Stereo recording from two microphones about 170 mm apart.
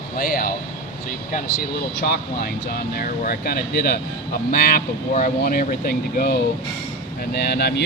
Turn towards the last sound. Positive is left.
turn(degrees=75)  # may be behind; listen again after turning